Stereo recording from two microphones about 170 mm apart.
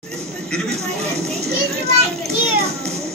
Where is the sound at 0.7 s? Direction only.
40° right (ahead or behind).